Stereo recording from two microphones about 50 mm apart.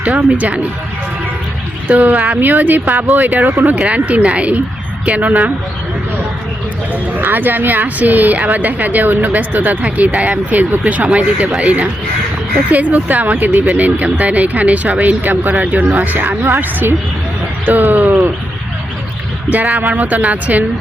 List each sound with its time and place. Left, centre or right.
0.2 s speech: right
1.9 s a woman's voice: right
3.8 s a woman's voice: right
7.2 s a woman's voice: right
9.8 s speech: right
10.5 s a woman's voice: right
19.5 s a woman's voice: right